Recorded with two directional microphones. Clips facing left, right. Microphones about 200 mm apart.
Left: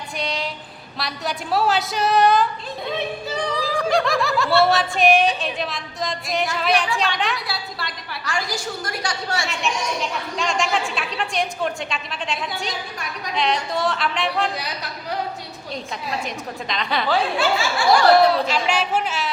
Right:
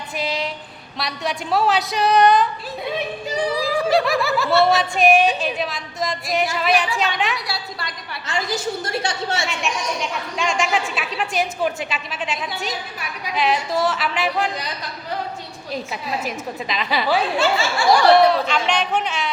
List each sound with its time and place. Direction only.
0.2 s a sound: centre (ahead or behind)
0.9 s a woman's voice: centre (ahead or behind)
3.2 s speech: 10° right (ahead or behind)
8.2 s a woman's voice: 20° right (ahead or behind)
9.5 s a woman's voice: centre (ahead or behind)
15.7 s a woman's voice: 5° right (ahead or behind)